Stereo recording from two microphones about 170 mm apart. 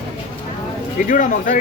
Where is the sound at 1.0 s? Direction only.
50° left (ahead or behind).